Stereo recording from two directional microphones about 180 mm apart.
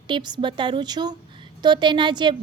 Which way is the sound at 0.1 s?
25° right (ahead or behind).